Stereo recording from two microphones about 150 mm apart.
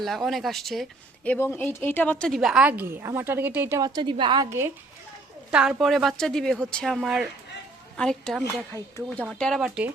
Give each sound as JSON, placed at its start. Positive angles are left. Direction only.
{"t": 0.0, "sound": "speech", "side_deg": 0}
{"t": 4.4, "sound": "speech", "side_deg": -15}
{"t": 5.5, "sound": "speech", "side_deg": -5}